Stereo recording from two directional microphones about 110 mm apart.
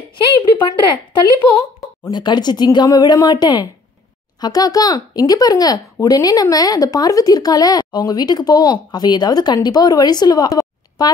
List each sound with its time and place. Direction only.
0.7 s speech: 45° left (ahead or behind)